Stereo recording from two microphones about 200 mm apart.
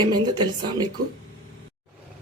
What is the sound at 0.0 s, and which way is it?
Speech, 20° right (ahead or behind).